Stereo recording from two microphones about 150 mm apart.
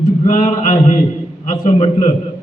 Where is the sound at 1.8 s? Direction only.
45° left (ahead or behind).